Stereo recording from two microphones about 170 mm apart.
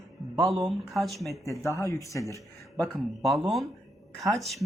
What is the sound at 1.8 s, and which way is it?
Speech, 20° left (ahead or behind).